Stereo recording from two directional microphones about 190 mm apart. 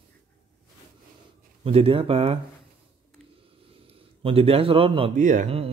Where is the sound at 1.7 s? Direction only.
30° right (ahead or behind).